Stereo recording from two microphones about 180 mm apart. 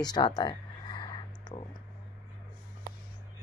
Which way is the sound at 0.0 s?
20° left (ahead or behind).